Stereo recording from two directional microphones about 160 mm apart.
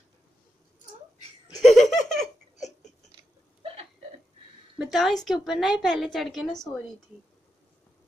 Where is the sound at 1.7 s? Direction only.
Centre (ahead or behind).